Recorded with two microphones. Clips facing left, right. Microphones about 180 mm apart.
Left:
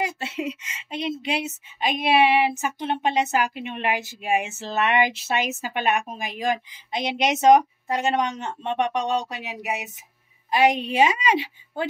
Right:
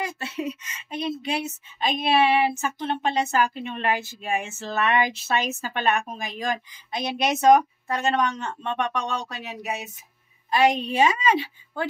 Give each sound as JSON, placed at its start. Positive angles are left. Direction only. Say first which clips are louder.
{"t": 0.0, "sound": "a woman's voice", "louder": "left 2 dB", "side_deg": 20}